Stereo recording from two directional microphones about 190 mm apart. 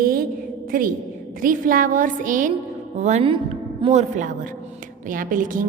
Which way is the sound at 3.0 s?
35° right (ahead or behind).